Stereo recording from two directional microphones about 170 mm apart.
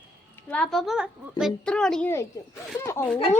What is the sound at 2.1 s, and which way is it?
Speech, 15° left (ahead or behind).